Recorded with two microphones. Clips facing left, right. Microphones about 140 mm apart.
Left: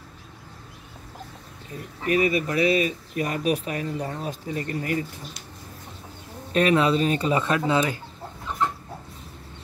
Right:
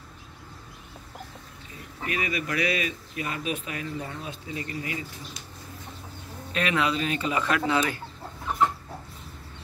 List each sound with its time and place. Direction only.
2.0 s speech: 35° left (ahead or behind)
6.5 s speech: 35° left (ahead or behind)